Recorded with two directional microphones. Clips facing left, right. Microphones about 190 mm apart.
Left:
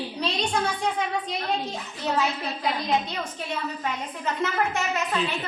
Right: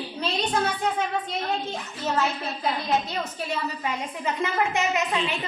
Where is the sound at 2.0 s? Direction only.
Centre (ahead or behind).